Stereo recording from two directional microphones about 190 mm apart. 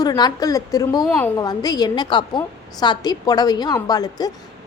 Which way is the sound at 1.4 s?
20° left (ahead or behind).